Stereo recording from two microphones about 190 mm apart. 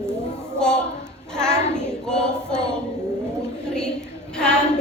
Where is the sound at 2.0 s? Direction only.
5° left (ahead or behind).